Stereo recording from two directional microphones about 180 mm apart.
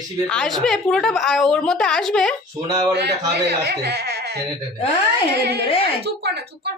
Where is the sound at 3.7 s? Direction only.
60° right (ahead or behind).